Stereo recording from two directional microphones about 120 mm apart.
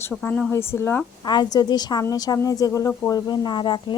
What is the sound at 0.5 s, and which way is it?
Speech, 20° left (ahead or behind).